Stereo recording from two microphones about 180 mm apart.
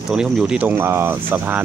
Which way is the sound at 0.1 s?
5° right (ahead or behind).